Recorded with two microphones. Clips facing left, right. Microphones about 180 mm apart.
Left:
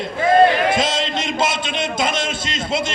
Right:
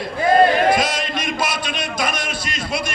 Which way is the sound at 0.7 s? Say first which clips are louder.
Left 1 dB; 25° left (ahead or behind).